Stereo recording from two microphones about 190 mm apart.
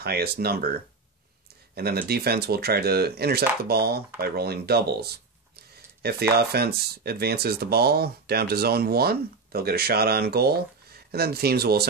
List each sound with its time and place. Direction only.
0.0 s speech: 55° right (ahead or behind)
1.8 s speech: 55° right (ahead or behind)